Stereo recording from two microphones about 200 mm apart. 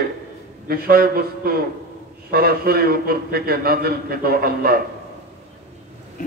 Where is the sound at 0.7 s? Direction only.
50° right (ahead or behind).